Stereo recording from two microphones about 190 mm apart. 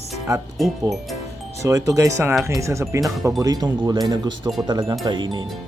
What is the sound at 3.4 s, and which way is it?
Speech, 20° right (ahead or behind).